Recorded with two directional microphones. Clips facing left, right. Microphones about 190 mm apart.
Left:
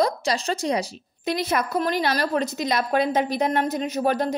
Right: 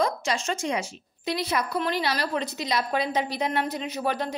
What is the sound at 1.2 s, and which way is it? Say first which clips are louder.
A woman's voice: left 3 dB; 50° left (ahead or behind).